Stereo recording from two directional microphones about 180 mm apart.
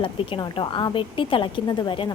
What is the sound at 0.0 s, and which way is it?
A woman's voice, 30° left (ahead or behind).